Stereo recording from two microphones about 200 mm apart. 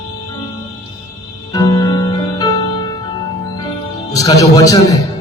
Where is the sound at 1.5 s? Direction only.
20° left (ahead or behind).